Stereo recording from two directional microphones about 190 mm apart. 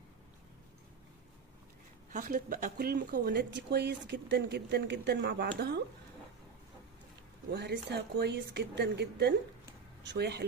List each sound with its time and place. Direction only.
2.1 s speech: 45° right (ahead or behind)
7.5 s speech: 60° right (ahead or behind)